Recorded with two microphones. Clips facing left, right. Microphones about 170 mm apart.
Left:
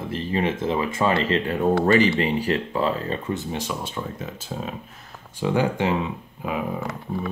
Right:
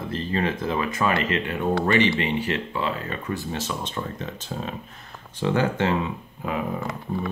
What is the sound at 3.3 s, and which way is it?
Speech, 20° left (ahead or behind).